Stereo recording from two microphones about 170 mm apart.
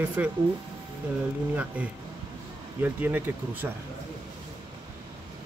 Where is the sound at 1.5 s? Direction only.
5° right (ahead or behind).